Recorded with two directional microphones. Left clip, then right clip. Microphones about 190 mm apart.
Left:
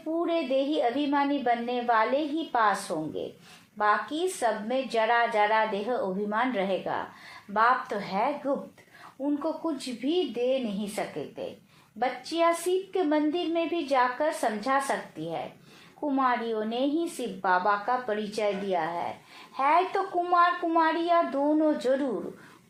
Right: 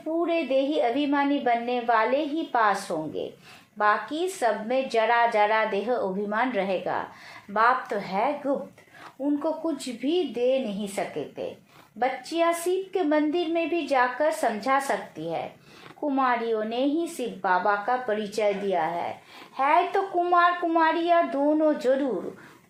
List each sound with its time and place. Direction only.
0.2 s a woman's voice: 25° right (ahead or behind)